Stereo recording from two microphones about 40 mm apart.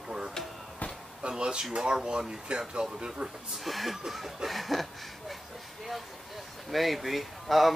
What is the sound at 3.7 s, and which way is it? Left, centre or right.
Speech, centre.